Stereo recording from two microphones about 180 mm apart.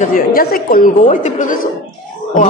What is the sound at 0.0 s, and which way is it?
Speech, 50° left (ahead or behind).